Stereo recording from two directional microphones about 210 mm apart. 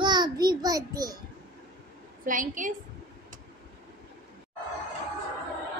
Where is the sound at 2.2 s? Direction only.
40° right (ahead or behind).